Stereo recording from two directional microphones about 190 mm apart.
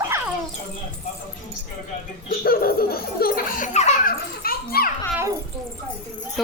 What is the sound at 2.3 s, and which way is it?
Speech, 50° left (ahead or behind).